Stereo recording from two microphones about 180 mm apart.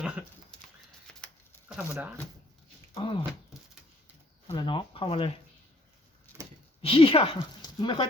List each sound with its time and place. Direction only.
1.7 s speech: 10° right (ahead or behind)
2.9 s speech: 25° left (ahead or behind)
4.4 s speech: 25° left (ahead or behind)
6.8 s speech: 30° left (ahead or behind)